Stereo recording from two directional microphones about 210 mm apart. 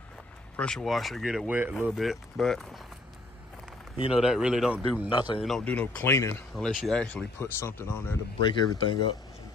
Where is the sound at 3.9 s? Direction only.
25° left (ahead or behind).